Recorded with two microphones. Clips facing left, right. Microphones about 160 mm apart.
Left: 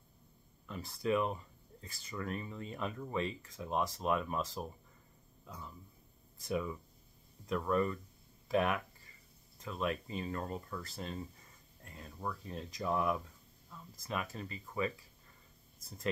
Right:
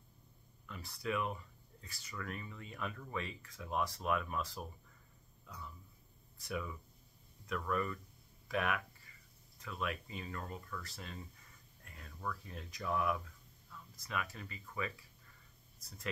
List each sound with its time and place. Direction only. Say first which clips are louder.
0.7 s speech: left 6 dB; 30° left (ahead or behind)
6.4 s speech: left 5 dB; 25° left (ahead or behind)
13.7 s a sound: left 5 dB; 30° left (ahead or behind)
14.3 s speech: left 5 dB; 30° left (ahead or behind)